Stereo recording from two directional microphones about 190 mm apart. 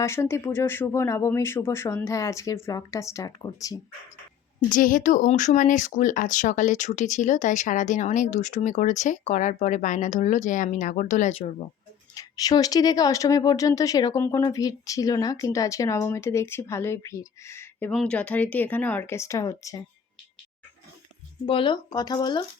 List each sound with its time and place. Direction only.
0.0 s speech: 15° left (ahead or behind)
4.7 s speech: 45° left (ahead or behind)
12.1 s speech: 20° left (ahead or behind)
21.4 s speech: 25° left (ahead or behind)